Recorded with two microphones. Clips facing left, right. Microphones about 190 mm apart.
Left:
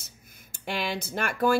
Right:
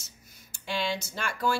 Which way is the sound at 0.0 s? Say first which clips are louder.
Left 2 dB; 55° left (ahead or behind).